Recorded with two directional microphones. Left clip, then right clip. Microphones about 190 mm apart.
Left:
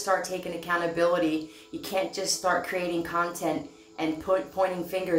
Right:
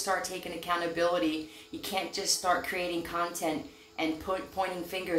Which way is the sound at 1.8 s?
10° left (ahead or behind).